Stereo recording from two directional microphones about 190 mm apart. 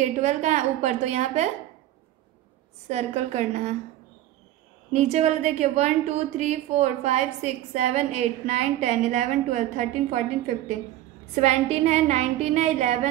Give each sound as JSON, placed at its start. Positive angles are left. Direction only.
{"t": 0.0, "sound": "a woman's voice", "side_deg": -40}
{"t": 2.9, "sound": "a woman's voice", "side_deg": -35}
{"t": 4.9, "sound": "a woman's voice", "side_deg": -35}
{"t": 11.3, "sound": "a woman's voice", "side_deg": -35}